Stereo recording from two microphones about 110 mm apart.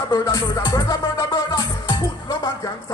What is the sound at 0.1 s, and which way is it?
Music, 25° left (ahead or behind).